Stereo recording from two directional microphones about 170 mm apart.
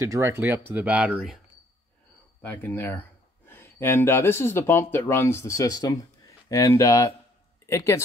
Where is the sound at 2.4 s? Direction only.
10° left (ahead or behind).